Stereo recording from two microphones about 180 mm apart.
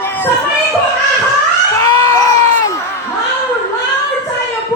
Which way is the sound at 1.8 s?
15° left (ahead or behind).